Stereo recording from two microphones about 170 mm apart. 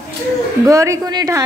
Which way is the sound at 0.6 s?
20° right (ahead or behind).